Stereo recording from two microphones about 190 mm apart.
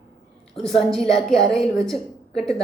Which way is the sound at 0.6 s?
Centre (ahead or behind).